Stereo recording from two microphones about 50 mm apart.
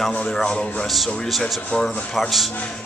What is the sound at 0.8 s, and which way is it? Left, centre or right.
Speech, centre.